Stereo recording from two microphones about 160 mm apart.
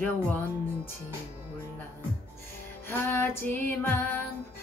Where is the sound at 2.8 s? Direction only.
15° left (ahead or behind).